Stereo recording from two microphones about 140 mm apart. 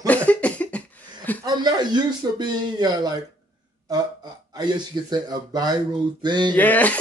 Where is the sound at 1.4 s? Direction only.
30° right (ahead or behind).